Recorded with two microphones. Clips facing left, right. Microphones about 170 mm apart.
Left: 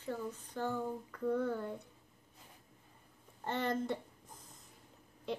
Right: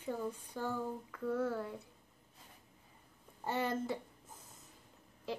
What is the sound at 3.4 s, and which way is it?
Speech, 5° right (ahead or behind).